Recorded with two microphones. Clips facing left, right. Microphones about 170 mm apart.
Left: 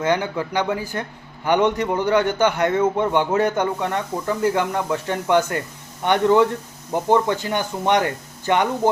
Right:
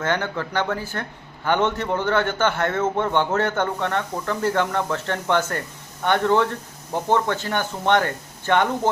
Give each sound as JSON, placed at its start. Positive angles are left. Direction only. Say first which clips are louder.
{"t": 0.0, "sound": "a man's voice", "louder": "left 3 dB", "side_deg": 15}